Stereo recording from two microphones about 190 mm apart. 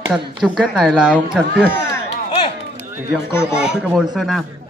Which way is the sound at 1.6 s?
10° left (ahead or behind).